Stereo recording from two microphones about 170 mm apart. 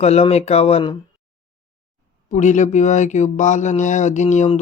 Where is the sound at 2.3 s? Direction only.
45° left (ahead or behind).